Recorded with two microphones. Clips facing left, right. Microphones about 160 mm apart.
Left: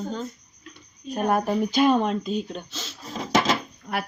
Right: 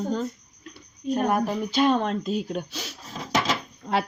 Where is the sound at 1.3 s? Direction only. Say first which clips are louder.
Left 2 dB; 20° left (ahead or behind).